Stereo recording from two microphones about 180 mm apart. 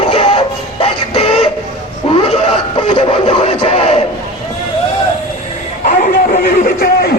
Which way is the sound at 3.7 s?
40° left (ahead or behind).